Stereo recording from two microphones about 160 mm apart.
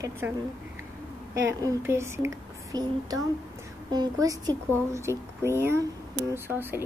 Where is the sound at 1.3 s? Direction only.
20° right (ahead or behind).